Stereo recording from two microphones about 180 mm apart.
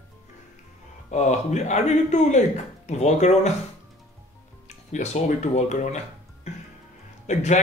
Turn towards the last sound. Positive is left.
turn(degrees=40)  # may be behind; listen again after turning